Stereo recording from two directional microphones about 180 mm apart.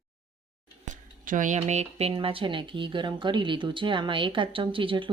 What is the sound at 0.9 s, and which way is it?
Speech, 45° right (ahead or behind).